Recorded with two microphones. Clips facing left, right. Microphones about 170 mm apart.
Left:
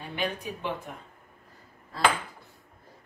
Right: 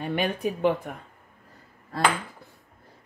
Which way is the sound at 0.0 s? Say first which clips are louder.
Right 6 dB; 60° right (ahead or behind).